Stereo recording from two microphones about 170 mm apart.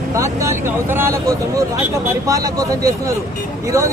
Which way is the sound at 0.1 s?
15° right (ahead or behind).